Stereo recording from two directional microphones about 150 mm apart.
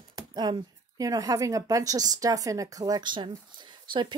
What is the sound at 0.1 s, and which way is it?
A woman's voice, 25° right (ahead or behind).